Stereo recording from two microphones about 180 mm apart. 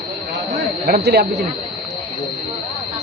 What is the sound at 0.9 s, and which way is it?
Speech, 60° right (ahead or behind).